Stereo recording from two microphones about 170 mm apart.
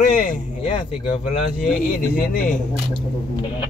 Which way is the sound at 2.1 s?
55° left (ahead or behind).